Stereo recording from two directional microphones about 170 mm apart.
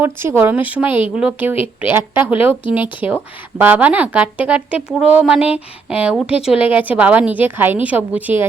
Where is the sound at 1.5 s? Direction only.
35° left (ahead or behind).